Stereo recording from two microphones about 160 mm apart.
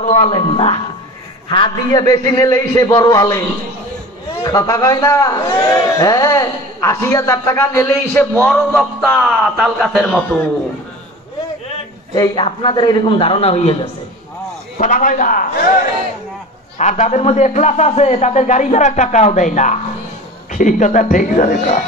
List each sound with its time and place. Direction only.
0.0 s a man's voice: 35° left (ahead or behind); by 10.2 s centre (ahead or behind)
12.1 s a man's voice: 30° left (ahead or behind)
14.8 s a man's voice: 55° left (ahead or behind)
16.7 s a man's voice: 45° left (ahead or behind)